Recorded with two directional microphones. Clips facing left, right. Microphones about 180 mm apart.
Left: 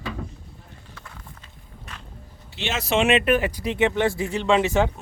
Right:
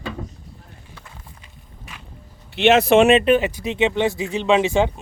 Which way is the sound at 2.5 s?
60° right (ahead or behind).